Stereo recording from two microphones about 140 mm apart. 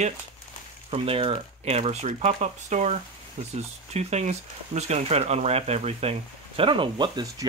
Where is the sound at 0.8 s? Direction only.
45° right (ahead or behind).